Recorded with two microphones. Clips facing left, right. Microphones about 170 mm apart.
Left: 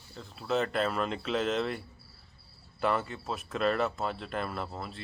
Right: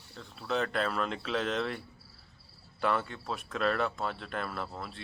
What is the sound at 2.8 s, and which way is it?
Speech, 5° left (ahead or behind).